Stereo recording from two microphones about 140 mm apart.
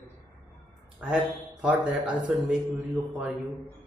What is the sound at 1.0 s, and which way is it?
A man's voice, 10° right (ahead or behind).